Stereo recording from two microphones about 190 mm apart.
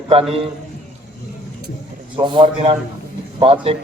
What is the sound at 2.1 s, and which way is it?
A woman's voice, 25° right (ahead or behind).